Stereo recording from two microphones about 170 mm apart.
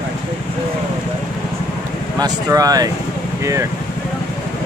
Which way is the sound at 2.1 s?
20° right (ahead or behind).